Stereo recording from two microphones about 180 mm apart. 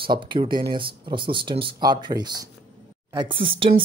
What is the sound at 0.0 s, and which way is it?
Speech, 25° right (ahead or behind).